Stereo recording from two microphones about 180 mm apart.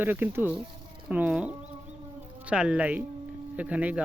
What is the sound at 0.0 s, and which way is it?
Speech, 10° right (ahead or behind).